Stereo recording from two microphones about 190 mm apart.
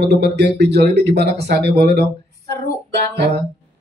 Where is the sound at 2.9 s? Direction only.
65° right (ahead or behind).